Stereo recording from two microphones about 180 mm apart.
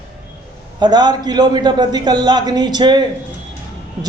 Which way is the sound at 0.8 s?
25° right (ahead or behind).